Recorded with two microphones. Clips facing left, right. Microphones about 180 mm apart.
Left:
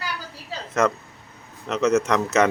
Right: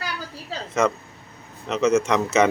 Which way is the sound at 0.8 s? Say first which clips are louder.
Even; centre (ahead or behind).